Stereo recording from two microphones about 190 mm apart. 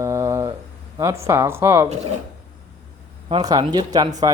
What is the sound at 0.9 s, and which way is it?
Speech, 15° right (ahead or behind).